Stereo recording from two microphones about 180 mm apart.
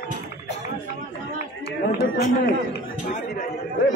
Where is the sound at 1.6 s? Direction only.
60° left (ahead or behind); by 3.5 s 45° left (ahead or behind).